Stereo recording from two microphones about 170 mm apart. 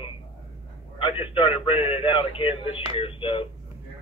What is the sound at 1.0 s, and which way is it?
A man's voice, 30° left (ahead or behind).